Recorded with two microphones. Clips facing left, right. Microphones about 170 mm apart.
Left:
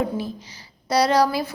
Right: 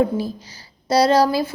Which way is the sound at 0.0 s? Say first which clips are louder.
Right 5 dB; 35° right (ahead or behind).